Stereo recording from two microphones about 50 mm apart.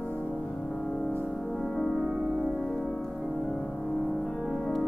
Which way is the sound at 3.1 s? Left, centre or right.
Centre.